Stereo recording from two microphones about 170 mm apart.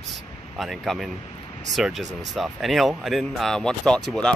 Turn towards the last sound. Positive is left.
turn(degrees=5)  # may be behind; listen again after turning